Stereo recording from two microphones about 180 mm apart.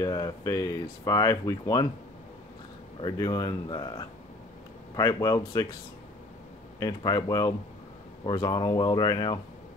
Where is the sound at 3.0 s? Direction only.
20° left (ahead or behind).